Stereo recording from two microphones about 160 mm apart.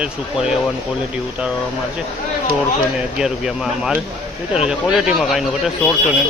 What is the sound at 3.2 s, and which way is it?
Speech, 5° right (ahead or behind).